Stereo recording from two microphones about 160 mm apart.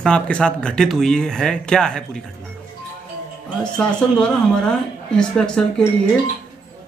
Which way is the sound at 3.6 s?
5° left (ahead or behind).